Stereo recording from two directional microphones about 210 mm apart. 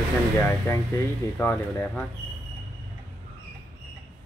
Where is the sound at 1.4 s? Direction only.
10° left (ahead or behind).